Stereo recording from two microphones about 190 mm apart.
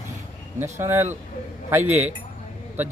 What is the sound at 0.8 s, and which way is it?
A man's voice, 10° right (ahead or behind).